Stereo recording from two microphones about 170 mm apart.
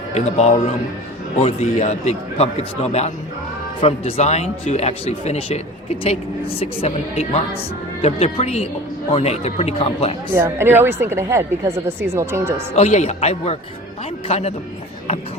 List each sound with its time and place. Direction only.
0.1 s a man's voice: 40° left (ahead or behind)
10.3 s a woman's voice: 15° right (ahead or behind)
12.7 s speech: 40° left (ahead or behind)